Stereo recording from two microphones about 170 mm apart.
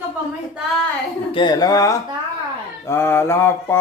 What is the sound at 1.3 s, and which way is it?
Speech, 25° left (ahead or behind).